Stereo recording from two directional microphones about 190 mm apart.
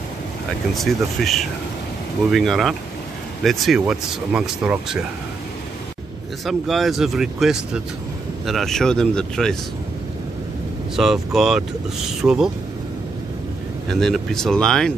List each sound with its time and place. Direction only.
0.7 s speech: centre (ahead or behind)
6.4 s speech: centre (ahead or behind)
11.0 s speech: centre (ahead or behind)
13.8 s speech: centre (ahead or behind)